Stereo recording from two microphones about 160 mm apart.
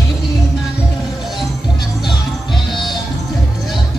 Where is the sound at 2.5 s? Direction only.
30° left (ahead or behind).